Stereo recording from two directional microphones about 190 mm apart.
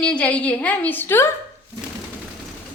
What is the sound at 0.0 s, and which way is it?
A woman's voice, 5° left (ahead or behind).